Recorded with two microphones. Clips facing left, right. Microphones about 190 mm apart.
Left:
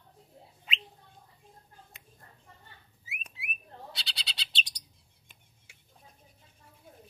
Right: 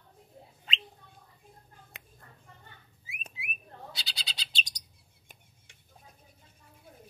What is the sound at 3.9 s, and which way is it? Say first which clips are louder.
Bird: even; centre (ahead or behind).